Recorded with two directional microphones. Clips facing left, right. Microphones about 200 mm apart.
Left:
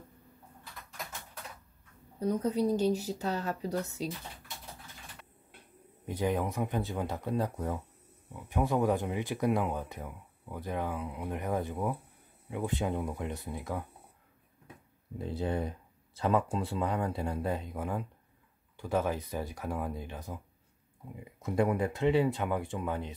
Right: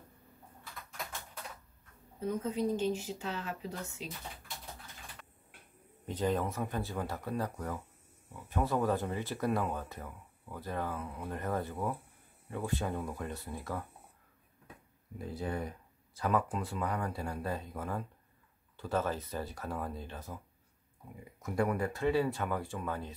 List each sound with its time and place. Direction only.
2.1 s speech: 40° left (ahead or behind)
6.0 s speech: 10° left (ahead or behind)
15.1 s speech: 25° left (ahead or behind)